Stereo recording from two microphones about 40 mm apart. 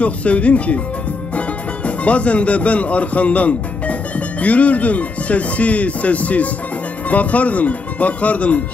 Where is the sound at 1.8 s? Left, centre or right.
Left.